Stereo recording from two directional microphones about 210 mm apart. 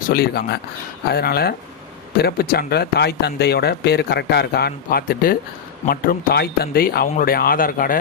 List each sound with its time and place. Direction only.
0.1 s speech: 45° left (ahead or behind)